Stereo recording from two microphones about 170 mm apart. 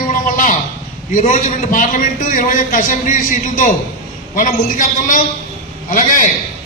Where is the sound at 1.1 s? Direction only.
50° left (ahead or behind).